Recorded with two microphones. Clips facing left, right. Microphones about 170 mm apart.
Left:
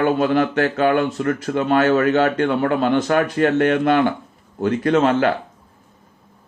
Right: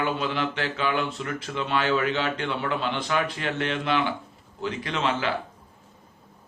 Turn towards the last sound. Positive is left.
turn(degrees=50)  # may be behind; listen again after turning